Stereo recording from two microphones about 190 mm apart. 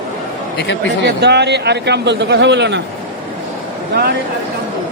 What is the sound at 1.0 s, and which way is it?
A man's voice, 60° right (ahead or behind).